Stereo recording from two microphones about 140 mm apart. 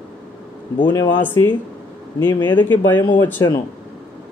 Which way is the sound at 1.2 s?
15° left (ahead or behind).